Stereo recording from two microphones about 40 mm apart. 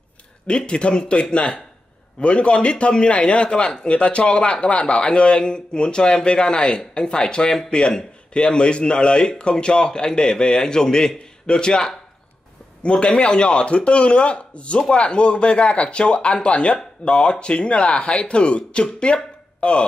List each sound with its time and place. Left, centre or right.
0.5 s a man's voice: left